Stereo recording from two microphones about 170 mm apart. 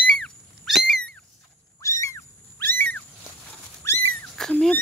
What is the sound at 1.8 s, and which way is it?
Cat, 15° left (ahead or behind).